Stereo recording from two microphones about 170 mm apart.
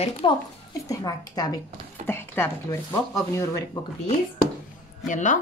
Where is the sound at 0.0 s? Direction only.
30° left (ahead or behind); by 3.0 s 15° left (ahead or behind).